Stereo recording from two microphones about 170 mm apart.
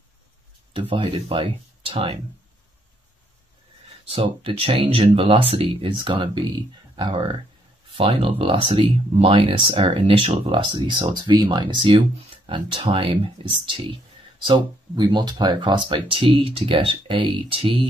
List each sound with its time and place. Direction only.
0.7 s speech: 30° right (ahead or behind)
4.1 s speech: 35° right (ahead or behind)